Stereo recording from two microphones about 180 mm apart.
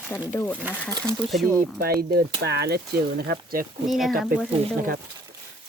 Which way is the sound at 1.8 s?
60° right (ahead or behind).